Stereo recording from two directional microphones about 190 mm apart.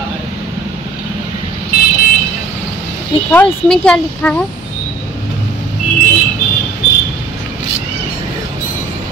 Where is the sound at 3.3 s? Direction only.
5° left (ahead or behind).